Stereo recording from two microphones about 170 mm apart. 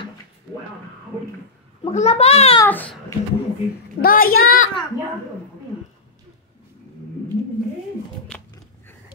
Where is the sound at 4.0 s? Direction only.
60° left (ahead or behind).